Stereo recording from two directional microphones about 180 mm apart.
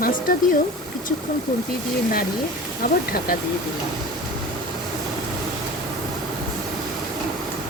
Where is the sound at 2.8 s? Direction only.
55° left (ahead or behind).